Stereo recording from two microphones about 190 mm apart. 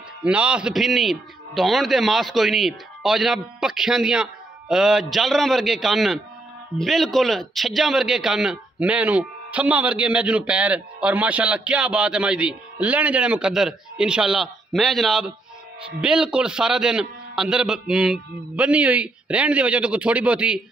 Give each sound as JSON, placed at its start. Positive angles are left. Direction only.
{"t": 0.2, "sound": "a man's voice", "side_deg": -5}